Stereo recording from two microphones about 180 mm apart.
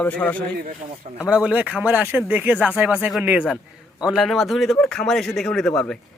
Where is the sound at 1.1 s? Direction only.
5° right (ahead or behind).